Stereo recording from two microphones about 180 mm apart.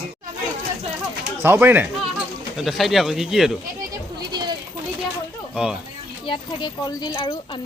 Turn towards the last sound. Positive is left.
turn(degrees=25)  # may be behind; listen again after turning